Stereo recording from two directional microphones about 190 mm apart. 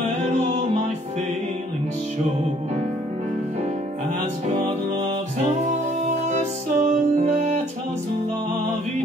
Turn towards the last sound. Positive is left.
turn(degrees=-40)  # may be behind; listen again after turning